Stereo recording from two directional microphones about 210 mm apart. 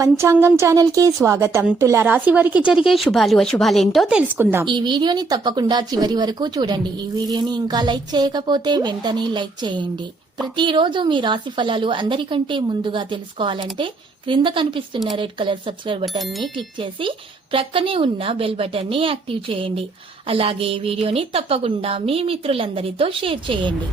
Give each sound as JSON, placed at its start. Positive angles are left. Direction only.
{"t": 0.0, "sound": "a woman's voice", "side_deg": -15}
{"t": 4.6, "sound": "speech", "side_deg": -20}
{"t": 16.0, "sound": "speech", "side_deg": 0}
{"t": 16.6, "sound": "speech", "side_deg": -25}